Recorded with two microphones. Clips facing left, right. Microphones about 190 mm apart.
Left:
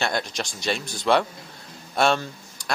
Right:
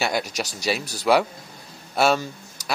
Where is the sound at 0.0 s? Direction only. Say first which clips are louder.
Right 2 dB; 5° right (ahead or behind).